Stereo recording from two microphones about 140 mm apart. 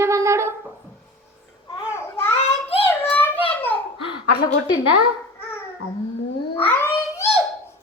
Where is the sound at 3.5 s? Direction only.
15° left (ahead or behind).